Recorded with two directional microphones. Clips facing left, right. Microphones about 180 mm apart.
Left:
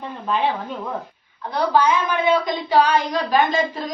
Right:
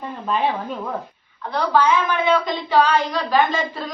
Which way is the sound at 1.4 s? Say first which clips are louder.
Even; 15° left (ahead or behind).